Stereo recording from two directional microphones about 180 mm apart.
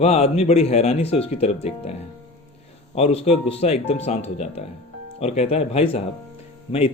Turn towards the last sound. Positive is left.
turn(degrees=35)  # may be behind; listen again after turning